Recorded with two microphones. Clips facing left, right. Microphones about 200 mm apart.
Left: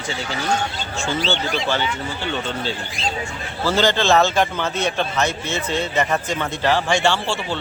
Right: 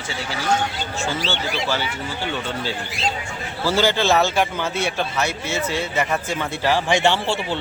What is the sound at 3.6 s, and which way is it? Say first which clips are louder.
Speech: left 1 dB; 10° right (ahead or behind).